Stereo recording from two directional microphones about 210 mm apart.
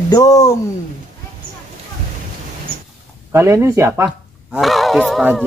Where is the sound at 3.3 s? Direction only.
15° right (ahead or behind).